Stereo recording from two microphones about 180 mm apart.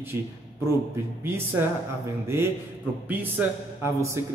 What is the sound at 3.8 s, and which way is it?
Speech, 15° right (ahead or behind).